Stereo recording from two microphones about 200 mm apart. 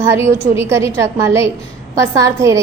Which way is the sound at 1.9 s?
15° right (ahead or behind).